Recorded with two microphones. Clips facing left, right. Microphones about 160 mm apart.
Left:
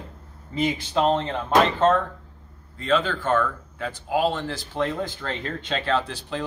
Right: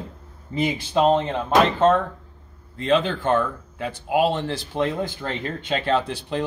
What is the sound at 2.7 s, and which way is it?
Speech, 20° right (ahead or behind).